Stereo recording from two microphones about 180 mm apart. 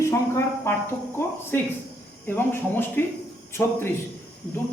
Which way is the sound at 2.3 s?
10° left (ahead or behind).